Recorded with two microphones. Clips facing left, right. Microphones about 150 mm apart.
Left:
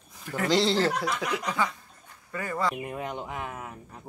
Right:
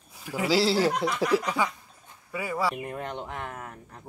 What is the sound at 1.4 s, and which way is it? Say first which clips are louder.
Speech: right 1 dB; 10° right (ahead or behind).